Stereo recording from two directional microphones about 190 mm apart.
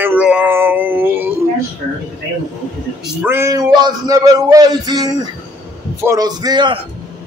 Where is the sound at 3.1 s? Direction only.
10° right (ahead or behind).